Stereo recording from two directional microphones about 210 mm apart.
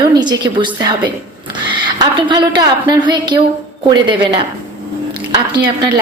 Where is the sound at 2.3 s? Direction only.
20° right (ahead or behind).